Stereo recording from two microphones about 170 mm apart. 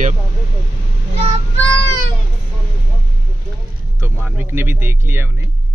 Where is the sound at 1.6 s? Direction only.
10° left (ahead or behind).